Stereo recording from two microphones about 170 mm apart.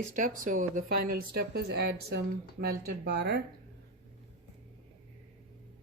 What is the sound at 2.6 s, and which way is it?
Speech, 65° right (ahead or behind).